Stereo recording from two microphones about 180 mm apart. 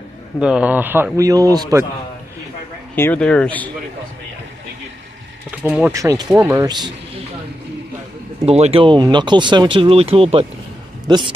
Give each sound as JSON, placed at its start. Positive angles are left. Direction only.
{"t": 0.4, "sound": "a man's voice", "side_deg": -5}
{"t": 3.0, "sound": "speech", "side_deg": 10}
{"t": 5.6, "sound": "a man's voice", "side_deg": -10}
{"t": 8.4, "sound": "a man's voice", "side_deg": -35}